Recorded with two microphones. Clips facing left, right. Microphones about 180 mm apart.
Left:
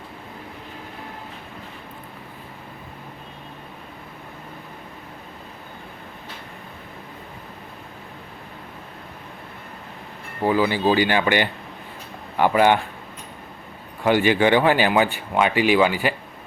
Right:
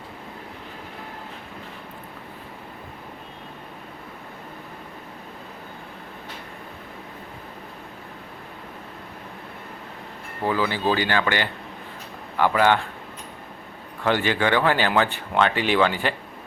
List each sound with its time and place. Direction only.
10.4 s speech: 15° left (ahead or behind)
14.0 s speech: 15° left (ahead or behind)